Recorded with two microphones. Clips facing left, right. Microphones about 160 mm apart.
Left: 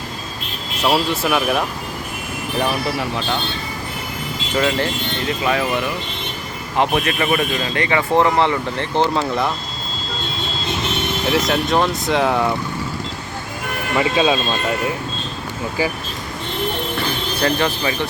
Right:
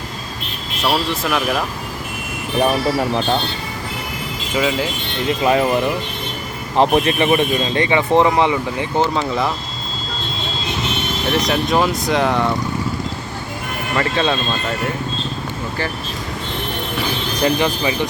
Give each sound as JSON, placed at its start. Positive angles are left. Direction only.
{"t": 0.9, "sound": "speech", "side_deg": 5}
{"t": 3.0, "sound": "speech", "side_deg": -40}
{"t": 4.5, "sound": "speech", "side_deg": -5}
{"t": 5.4, "sound": "speech", "side_deg": -30}
{"t": 9.0, "sound": "speech", "side_deg": 0}
{"t": 11.3, "sound": "speech", "side_deg": 0}
{"t": 13.9, "sound": "speech", "side_deg": 10}
{"t": 17.0, "sound": "speech", "side_deg": -15}